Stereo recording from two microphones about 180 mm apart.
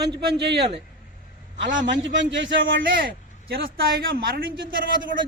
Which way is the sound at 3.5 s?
55° right (ahead or behind).